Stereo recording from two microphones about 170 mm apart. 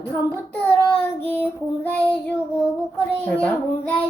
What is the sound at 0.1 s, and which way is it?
Child singing, 10° left (ahead or behind).